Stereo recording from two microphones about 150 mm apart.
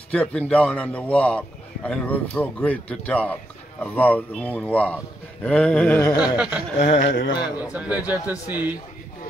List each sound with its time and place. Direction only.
0.1 s a man's voice: 5° left (ahead or behind)
6.2 s speech: 10° right (ahead or behind)
6.9 s speech: 55° left (ahead or behind)
7.3 s a man's voice: 25° left (ahead or behind)
7.7 s speech: 10° right (ahead or behind)